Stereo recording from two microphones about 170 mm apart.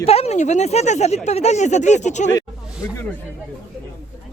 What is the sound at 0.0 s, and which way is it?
Speech, 35° left (ahead or behind).